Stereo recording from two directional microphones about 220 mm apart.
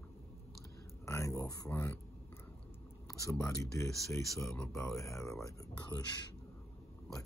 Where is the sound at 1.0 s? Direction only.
15° left (ahead or behind).